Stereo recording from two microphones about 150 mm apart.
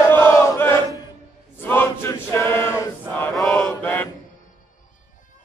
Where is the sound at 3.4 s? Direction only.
Centre (ahead or behind).